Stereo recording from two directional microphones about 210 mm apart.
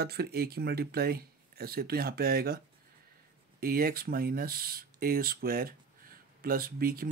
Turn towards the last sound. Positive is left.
turn(degrees=-45)  # may be behind; listen again after turning